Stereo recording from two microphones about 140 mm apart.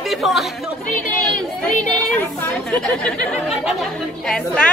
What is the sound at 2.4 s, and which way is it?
Speech, 5° left (ahead or behind).